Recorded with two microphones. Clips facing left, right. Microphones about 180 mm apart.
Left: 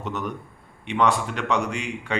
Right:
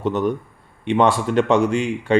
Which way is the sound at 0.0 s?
30° right (ahead or behind).